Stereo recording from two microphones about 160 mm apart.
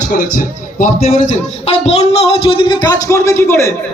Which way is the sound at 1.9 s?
40° left (ahead or behind).